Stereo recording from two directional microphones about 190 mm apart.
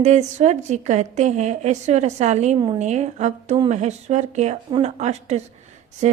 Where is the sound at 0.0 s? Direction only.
35° right (ahead or behind).